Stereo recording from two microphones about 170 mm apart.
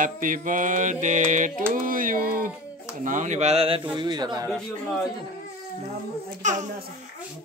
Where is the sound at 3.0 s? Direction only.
45° right (ahead or behind).